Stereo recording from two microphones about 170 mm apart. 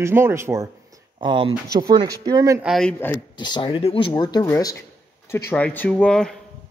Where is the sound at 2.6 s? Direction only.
Centre (ahead or behind).